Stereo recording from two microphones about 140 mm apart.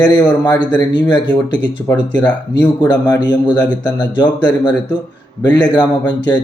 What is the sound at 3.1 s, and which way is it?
Speech, 30° left (ahead or behind).